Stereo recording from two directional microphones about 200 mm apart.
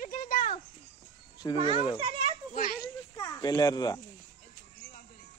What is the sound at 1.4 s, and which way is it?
Speech, 20° left (ahead or behind).